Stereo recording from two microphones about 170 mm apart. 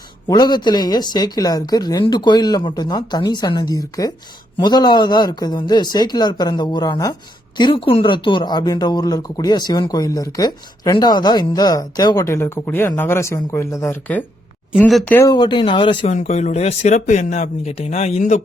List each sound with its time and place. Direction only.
0.3 s a man's voice: 25° left (ahead or behind)
14.8 s speech: centre (ahead or behind)
15.1 s a man's voice: 20° left (ahead or behind)
16.1 s speech: 40° left (ahead or behind)